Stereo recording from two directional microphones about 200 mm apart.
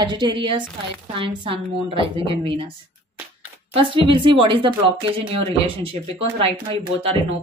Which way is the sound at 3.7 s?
25° right (ahead or behind).